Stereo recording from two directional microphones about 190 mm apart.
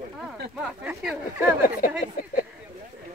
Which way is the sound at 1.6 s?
50° left (ahead or behind).